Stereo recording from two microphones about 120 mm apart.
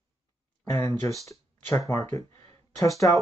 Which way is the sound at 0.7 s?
20° left (ahead or behind).